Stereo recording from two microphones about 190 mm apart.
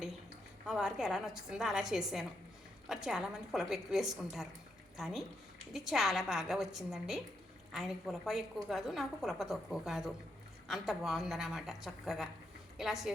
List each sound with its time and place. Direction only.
0.7 s a woman's voice: centre (ahead or behind)